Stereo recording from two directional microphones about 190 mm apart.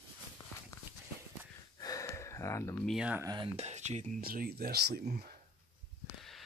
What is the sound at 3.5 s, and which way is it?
Speech, 35° right (ahead or behind).